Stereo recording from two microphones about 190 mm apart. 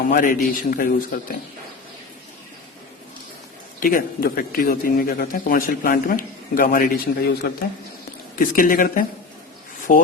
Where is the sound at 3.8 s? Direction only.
50° left (ahead or behind).